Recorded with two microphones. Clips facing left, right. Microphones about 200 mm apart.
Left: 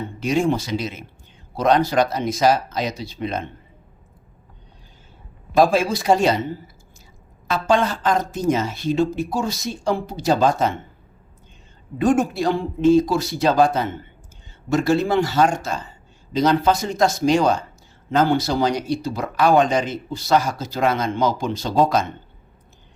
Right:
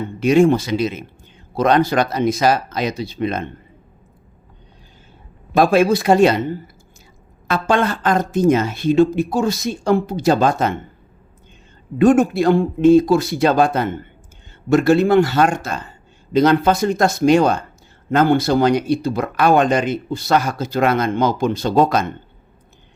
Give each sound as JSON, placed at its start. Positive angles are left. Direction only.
{"t": 0.2, "sound": "speech", "side_deg": -60}
{"t": 5.5, "sound": "speech", "side_deg": -60}
{"t": 11.9, "sound": "speech", "side_deg": -60}